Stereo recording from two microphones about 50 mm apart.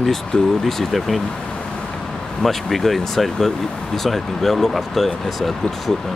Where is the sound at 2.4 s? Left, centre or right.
Centre.